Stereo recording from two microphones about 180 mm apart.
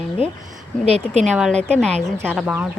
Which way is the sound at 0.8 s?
35° right (ahead or behind).